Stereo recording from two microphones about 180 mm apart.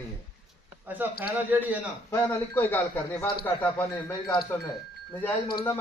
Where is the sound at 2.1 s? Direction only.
10° left (ahead or behind).